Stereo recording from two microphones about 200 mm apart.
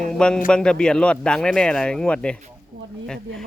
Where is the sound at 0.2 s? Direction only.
5° left (ahead or behind).